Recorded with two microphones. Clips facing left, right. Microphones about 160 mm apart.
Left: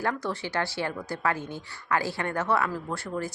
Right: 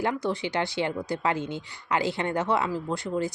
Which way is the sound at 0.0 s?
15° right (ahead or behind).